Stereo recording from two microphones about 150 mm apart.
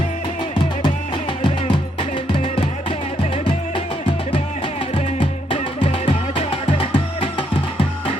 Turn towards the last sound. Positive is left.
turn(degrees=35)  # may be behind; listen again after turning